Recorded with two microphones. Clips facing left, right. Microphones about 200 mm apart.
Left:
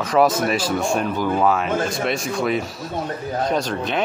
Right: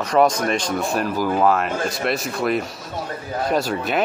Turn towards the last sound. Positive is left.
turn(degrees=-5)  # may be behind; listen again after turning